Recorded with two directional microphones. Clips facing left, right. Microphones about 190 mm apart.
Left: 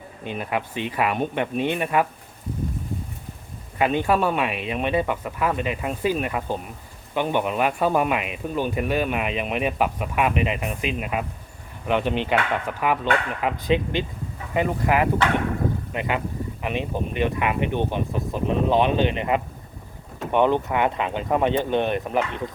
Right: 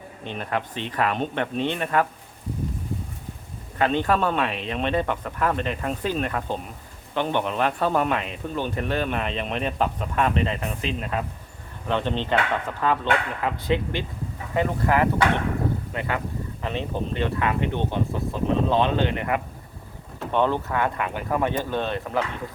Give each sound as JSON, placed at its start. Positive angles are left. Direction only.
{"t": 0.3, "sound": "speech", "side_deg": 10}
{"t": 3.8, "sound": "speech", "side_deg": 10}